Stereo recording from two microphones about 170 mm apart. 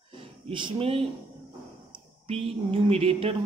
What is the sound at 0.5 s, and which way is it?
Speech, 30° right (ahead or behind).